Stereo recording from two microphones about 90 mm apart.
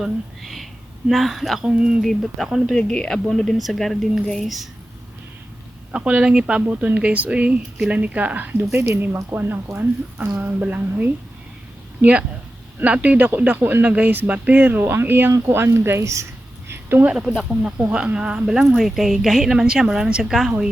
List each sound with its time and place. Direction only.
0.0 s speech: centre (ahead or behind)
5.9 s speech: 15° right (ahead or behind)
12.8 s speech: 15° right (ahead or behind); by 16.2 s 30° right (ahead or behind)
16.6 s a sound: 25° right (ahead or behind)
17.1 s speech: 10° right (ahead or behind)